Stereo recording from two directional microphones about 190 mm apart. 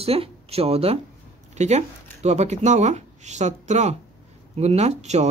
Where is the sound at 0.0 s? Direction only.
30° right (ahead or behind).